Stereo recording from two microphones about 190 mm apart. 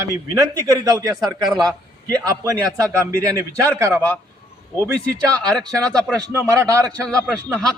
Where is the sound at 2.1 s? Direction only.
15° right (ahead or behind).